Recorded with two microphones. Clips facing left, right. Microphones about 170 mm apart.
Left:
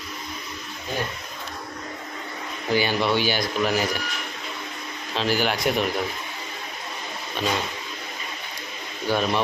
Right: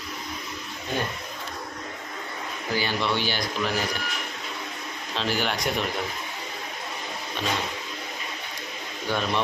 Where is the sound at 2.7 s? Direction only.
15° left (ahead or behind).